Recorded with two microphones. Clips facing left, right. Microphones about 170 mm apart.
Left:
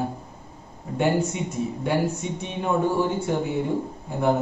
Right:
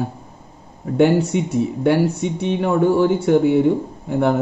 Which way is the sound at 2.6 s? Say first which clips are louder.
Right 6 dB; 75° right (ahead or behind).